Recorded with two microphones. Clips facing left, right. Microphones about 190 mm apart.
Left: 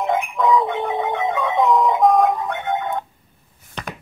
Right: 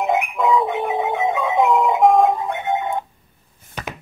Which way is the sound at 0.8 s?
20° right (ahead or behind).